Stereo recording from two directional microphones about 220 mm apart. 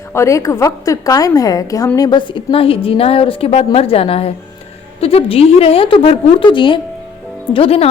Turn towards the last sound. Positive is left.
turn(degrees=25)  # may be behind; listen again after turning